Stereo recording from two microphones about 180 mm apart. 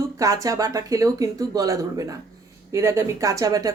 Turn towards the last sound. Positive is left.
turn(degrees=-20)  # may be behind; listen again after turning